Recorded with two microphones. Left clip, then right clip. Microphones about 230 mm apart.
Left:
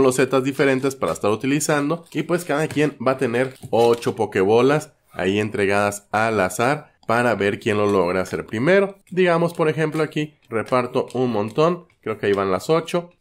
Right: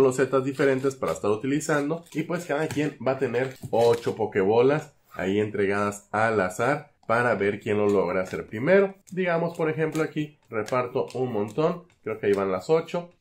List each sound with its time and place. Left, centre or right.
0.0 s speech: left